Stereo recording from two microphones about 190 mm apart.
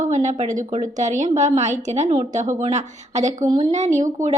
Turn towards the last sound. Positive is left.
turn(degrees=-40)  # may be behind; listen again after turning